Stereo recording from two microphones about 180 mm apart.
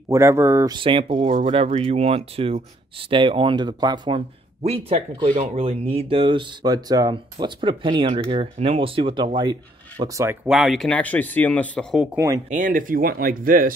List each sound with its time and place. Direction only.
0.1 s speech: 15° right (ahead or behind)
0.7 s speech: 30° right (ahead or behind)
10.4 s speech: centre (ahead or behind)
12.4 s speech: 45° right (ahead or behind)